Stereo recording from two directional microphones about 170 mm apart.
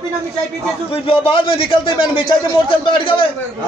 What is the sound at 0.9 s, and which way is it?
A man's voice, 30° left (ahead or behind).